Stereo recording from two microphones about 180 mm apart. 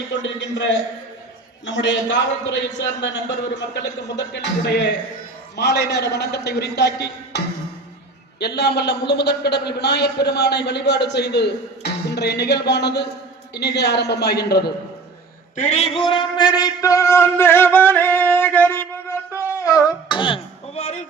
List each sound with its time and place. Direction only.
0.1 s a man's voice: 80° left
1.6 s a man's voice: 90° left; by 14.7 s 65° left (ahead or behind)
15.5 s a man's voice: 40° left (ahead or behind); by 19.2 s 10° left (ahead or behind)
19.4 s music: 15° left (ahead or behind); by 21.0 s 35° left (ahead or behind)